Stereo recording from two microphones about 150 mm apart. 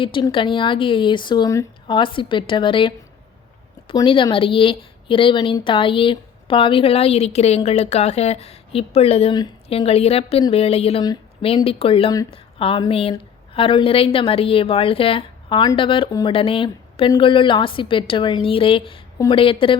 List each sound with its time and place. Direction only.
0.0 s a woman's voice: 35° left (ahead or behind)